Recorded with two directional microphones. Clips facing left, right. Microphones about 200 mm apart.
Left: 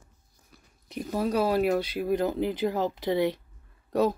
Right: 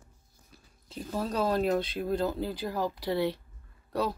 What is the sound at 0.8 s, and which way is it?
Speech, 15° left (ahead or behind).